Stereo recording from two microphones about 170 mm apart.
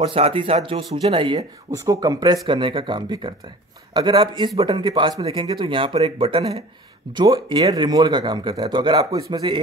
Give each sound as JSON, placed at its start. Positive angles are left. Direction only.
{"t": 0.0, "sound": "speech", "side_deg": -35}
{"t": 7.2, "sound": "speech", "side_deg": -25}